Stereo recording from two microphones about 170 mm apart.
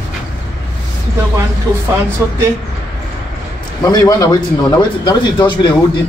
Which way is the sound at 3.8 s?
20° left (ahead or behind).